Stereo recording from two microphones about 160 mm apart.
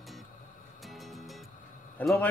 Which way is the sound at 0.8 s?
Centre (ahead or behind).